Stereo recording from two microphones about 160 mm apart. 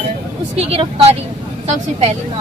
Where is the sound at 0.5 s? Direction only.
40° right (ahead or behind).